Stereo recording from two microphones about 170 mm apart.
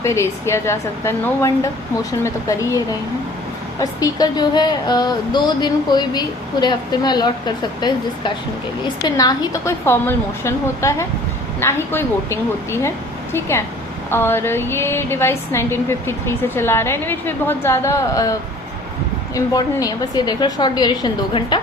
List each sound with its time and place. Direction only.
0.0 s a woman's voice: 15° left (ahead or behind)